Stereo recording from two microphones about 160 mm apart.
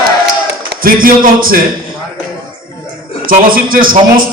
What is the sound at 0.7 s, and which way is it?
Speech, 65° right (ahead or behind).